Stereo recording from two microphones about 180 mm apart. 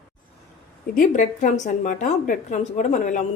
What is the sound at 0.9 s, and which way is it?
A woman's voice, 50° left (ahead or behind).